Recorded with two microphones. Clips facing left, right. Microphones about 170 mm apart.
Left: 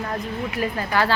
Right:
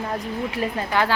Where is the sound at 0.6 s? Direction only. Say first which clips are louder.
Left 1 dB; 20° right (ahead or behind).